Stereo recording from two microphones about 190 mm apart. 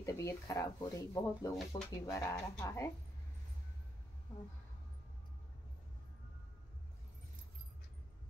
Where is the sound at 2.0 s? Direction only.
15° left (ahead or behind).